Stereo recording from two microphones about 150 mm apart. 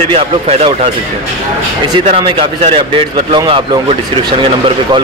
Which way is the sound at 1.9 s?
35° right (ahead or behind).